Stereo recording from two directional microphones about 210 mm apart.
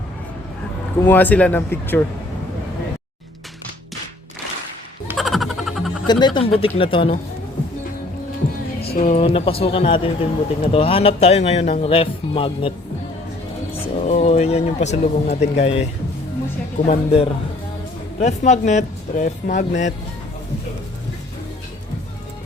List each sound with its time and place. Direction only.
1.0 s speech: 10° left (ahead or behind)
5.0 s music: centre (ahead or behind)
6.1 s speech: 20° left (ahead or behind)
8.9 s speech: 35° left (ahead or behind)
13.8 s speech: 35° left (ahead or behind)